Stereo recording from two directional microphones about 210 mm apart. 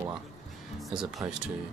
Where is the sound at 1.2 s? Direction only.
20° right (ahead or behind).